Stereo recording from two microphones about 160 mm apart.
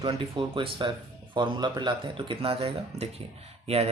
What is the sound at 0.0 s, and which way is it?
Speech, 30° right (ahead or behind).